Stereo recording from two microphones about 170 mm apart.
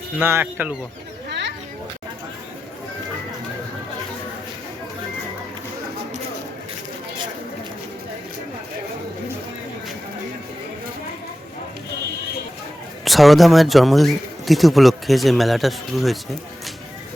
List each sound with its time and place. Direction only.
0.2 s speech: 15° right (ahead or behind)
1.3 s a sound: 90° right
13.1 s speech: centre (ahead or behind)